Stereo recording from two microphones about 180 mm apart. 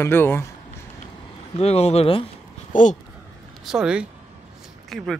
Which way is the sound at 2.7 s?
45° left (ahead or behind).